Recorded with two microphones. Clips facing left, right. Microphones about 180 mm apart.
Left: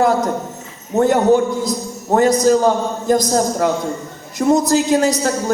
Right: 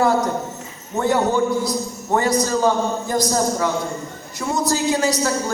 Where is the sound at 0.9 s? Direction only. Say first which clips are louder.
Left 6 dB; 45° left (ahead or behind).